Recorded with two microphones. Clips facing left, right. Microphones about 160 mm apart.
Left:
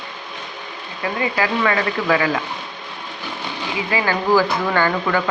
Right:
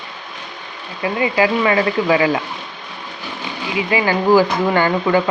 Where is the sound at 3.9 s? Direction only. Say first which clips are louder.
Right 4 dB; 15° right (ahead or behind).